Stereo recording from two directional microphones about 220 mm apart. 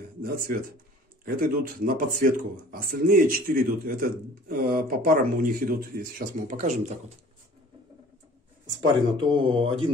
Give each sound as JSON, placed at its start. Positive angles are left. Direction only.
{"t": 0.2, "sound": "speech", "side_deg": -45}
{"t": 8.6, "sound": "speech", "side_deg": -20}